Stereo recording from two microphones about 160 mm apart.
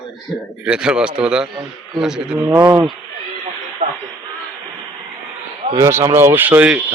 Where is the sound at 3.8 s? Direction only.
50° right (ahead or behind).